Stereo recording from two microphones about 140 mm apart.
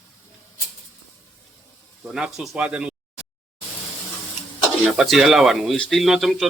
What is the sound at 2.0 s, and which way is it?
Speech, 5° right (ahead or behind).